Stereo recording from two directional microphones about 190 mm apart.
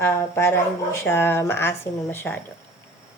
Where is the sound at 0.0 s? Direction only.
15° left (ahead or behind).